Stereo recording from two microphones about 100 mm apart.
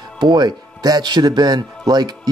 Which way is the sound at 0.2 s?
50° right (ahead or behind).